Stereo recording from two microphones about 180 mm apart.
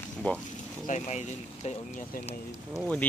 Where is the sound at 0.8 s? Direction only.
40° left (ahead or behind).